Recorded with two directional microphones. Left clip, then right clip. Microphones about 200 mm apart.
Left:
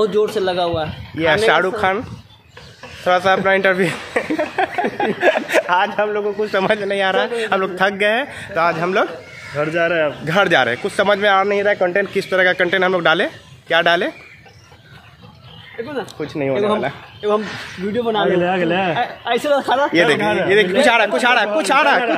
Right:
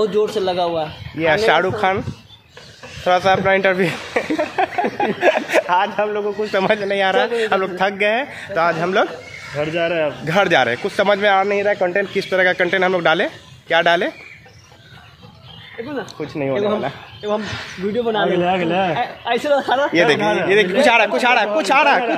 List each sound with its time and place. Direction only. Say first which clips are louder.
0.0 s a man's voice: left 1 dB; 5° left (ahead or behind)
7.7 s speech: left 1 dB; 15° left (ahead or behind)
8.5 s a man's voice: even; 5° right (ahead or behind)
9.6 s speech: left 2 dB; 10° left (ahead or behind)
10.2 s a man's voice: even; 5° right (ahead or behind)
16.2 s a man's voice: left 1 dB; 5° left (ahead or behind)
17.2 s speech: left 4 dB; 60° left (ahead or behind)
17.9 s a man's voice: left 1 dB; 25° left (ahead or behind)
18.4 s speech: even; 20° right (ahead or behind)
18.9 s a man's voice: left 1 dB; 25° left (ahead or behind)
19.9 s a man's voice: even; 5° right (ahead or behind)